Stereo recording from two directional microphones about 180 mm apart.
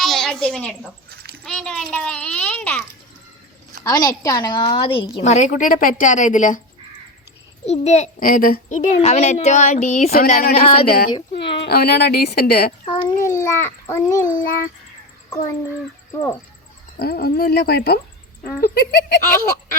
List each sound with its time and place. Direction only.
0.0 s a woman's voice: centre (ahead or behind)
1.1 s a sound: 60° right (ahead or behind)
1.5 s a child's voice: 5° left (ahead or behind)
3.8 s a woman's voice: 20° left (ahead or behind)
5.2 s speech: 40° left (ahead or behind)
7.6 s speech: 40° left (ahead or behind)
9.0 s speech: 35° left (ahead or behind)
10.8 s speech: 55° left (ahead or behind)
12.8 s a woman's voice: 25° left (ahead or behind)
13.2 s a child's voice: 15° left (ahead or behind)
15.3 s a child's voice: 20° left (ahead or behind)
17.0 s speech: 60° left (ahead or behind)